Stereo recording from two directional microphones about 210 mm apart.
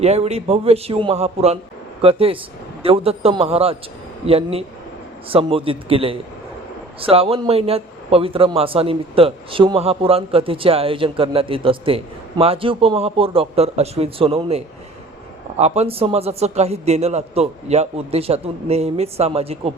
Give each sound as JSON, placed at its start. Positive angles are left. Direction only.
{"t": 0.0, "sound": "a man's voice", "side_deg": -30}